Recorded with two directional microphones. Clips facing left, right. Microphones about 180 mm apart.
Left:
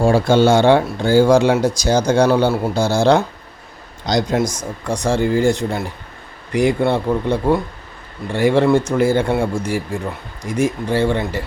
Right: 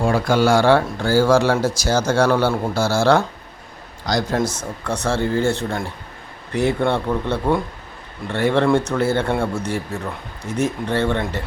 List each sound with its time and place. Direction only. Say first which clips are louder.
0.0 s speech: left 4 dB; 25° left (ahead or behind); by 11.4 s 10° left (ahead or behind)